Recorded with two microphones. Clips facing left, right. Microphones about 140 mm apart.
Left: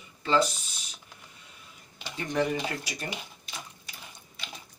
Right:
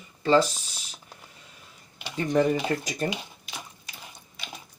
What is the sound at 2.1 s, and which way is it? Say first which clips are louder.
Speech: right 5 dB; 45° right (ahead or behind).